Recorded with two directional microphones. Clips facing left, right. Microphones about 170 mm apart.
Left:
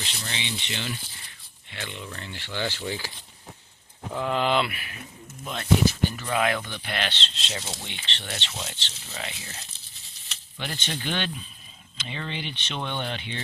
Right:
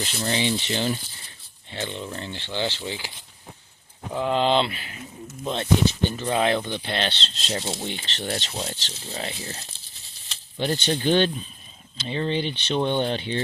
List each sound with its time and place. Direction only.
0.0 s speech: 45° right (ahead or behind); by 3.1 s 20° right (ahead or behind)
4.1 s speech: 20° right (ahead or behind)